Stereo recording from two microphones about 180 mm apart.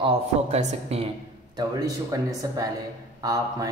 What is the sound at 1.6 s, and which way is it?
Speech, 20° right (ahead or behind).